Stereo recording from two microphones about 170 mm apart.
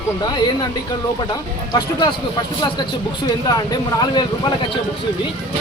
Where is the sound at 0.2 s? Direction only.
25° left (ahead or behind).